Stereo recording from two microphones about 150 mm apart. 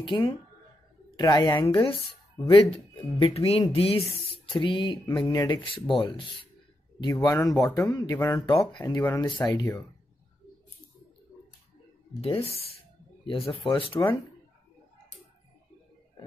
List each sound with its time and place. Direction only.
0.0 s speech: 30° left (ahead or behind)
12.2 s speech: 40° left (ahead or behind)
13.9 s speech: 15° left (ahead or behind)